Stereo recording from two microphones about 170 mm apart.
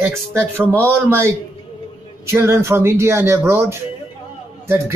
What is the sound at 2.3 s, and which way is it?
A man's voice, 15° right (ahead or behind).